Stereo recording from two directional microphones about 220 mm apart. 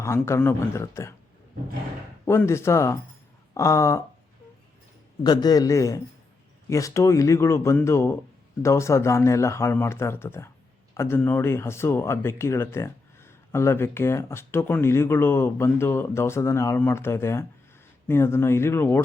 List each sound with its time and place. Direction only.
0.0 s speech: 10° left (ahead or behind)
2.2 s speech: 10° left (ahead or behind)
5.2 s speech: 20° left (ahead or behind)